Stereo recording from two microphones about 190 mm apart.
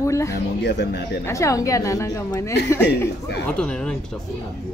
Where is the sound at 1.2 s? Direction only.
15° left (ahead or behind).